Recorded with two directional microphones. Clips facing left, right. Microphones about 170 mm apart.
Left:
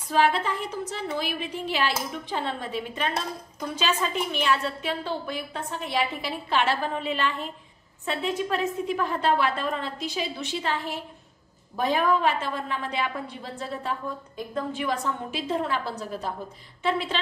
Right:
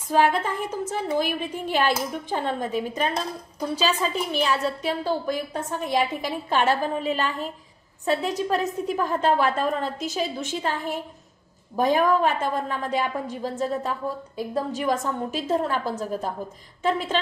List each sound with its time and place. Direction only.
0.1 s a woman's voice: 50° right (ahead or behind)